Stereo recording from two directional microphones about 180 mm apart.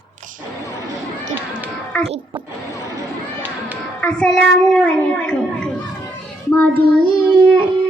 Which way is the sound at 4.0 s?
5° left (ahead or behind).